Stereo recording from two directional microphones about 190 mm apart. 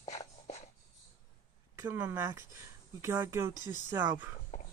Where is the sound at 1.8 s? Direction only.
10° right (ahead or behind).